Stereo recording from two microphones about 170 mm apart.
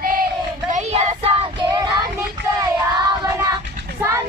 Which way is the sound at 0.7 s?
45° right (ahead or behind).